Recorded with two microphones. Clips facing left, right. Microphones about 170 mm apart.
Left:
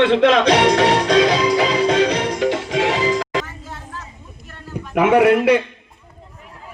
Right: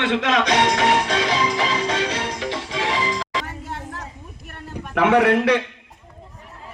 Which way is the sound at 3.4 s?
60° right (ahead or behind).